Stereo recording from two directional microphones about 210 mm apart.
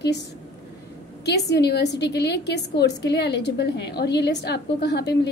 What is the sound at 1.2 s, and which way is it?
A woman's voice, 50° left (ahead or behind).